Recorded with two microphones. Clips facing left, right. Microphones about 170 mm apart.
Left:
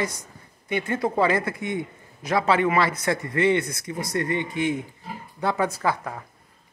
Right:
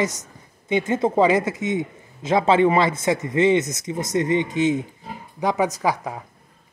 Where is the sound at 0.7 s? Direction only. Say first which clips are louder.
Right 5 dB; 25° right (ahead or behind).